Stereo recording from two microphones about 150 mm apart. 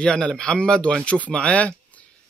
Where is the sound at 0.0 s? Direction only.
5° left (ahead or behind).